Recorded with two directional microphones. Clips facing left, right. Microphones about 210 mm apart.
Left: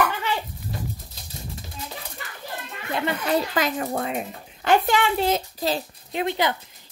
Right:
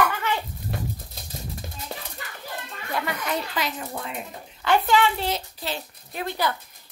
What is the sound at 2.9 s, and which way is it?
Speech, 30° left (ahead or behind).